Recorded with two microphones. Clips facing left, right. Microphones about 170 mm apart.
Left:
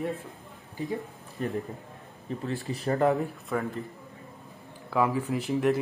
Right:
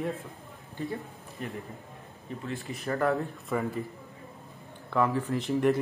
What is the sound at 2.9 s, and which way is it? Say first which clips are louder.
Speech: left 3 dB; 20° left (ahead or behind).